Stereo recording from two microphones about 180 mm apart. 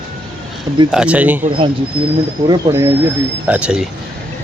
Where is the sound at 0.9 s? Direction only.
5° right (ahead or behind).